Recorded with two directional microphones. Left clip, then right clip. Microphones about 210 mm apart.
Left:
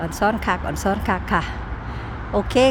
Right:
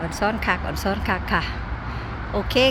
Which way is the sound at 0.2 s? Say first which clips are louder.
Left 2 dB; 20° left (ahead or behind).